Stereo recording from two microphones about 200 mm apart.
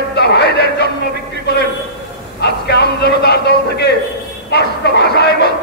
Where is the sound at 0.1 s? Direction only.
55° left (ahead or behind).